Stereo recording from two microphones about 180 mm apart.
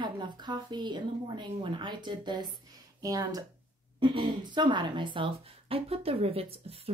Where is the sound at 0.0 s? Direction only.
25° right (ahead or behind).